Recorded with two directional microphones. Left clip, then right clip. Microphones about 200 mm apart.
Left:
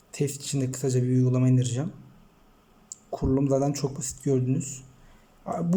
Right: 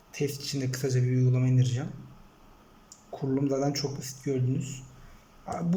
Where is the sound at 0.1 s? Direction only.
20° left (ahead or behind).